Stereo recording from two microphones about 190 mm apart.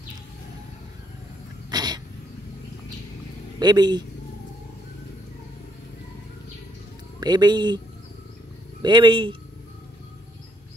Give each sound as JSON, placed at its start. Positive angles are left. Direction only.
{"t": 1.7, "sound": "a sound", "side_deg": -20}
{"t": 3.5, "sound": "speech", "side_deg": -20}
{"t": 7.2, "sound": "speech", "side_deg": -20}
{"t": 8.8, "sound": "speech", "side_deg": -25}